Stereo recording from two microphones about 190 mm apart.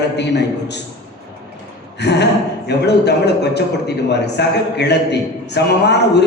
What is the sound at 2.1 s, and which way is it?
A man's voice, 65° left (ahead or behind).